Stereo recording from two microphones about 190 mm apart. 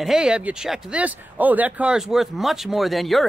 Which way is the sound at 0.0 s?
5° right (ahead or behind).